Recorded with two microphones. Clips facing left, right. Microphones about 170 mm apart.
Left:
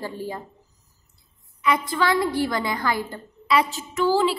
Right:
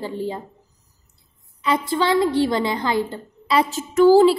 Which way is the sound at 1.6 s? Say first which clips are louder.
Right 2 dB; 30° right (ahead or behind).